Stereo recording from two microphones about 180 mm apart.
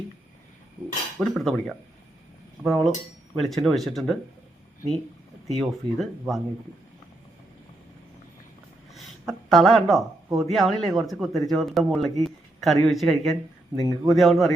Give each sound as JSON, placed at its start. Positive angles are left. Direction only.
{"t": 1.2, "sound": "speech", "side_deg": 0}
{"t": 5.5, "sound": "speech", "side_deg": 0}
{"t": 9.0, "sound": "speech", "side_deg": 0}
{"t": 12.2, "sound": "a sound", "side_deg": 0}
{"t": 12.8, "sound": "speech", "side_deg": 0}
{"t": 13.7, "sound": "speech", "side_deg": -20}
{"t": 14.1, "sound": "speech", "side_deg": 0}